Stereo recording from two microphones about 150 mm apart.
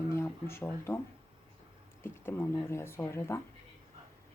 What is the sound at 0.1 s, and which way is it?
Speech, 15° left (ahead or behind).